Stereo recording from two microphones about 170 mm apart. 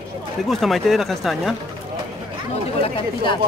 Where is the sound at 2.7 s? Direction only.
30° left (ahead or behind).